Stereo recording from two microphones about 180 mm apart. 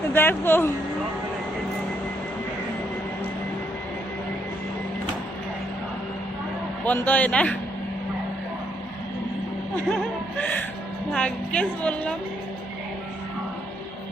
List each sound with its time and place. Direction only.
0.1 s speech: 10° left (ahead or behind)
6.8 s a woman's voice: 10° left (ahead or behind)
9.9 s music: 5° left (ahead or behind)
11.1 s a woman's voice: 5° left (ahead or behind)